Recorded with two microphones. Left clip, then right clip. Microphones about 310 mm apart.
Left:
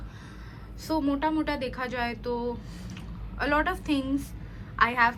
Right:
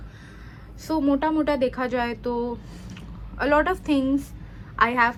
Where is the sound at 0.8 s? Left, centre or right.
Centre.